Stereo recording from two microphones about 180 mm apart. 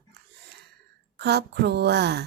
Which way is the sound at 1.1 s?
65° right (ahead or behind).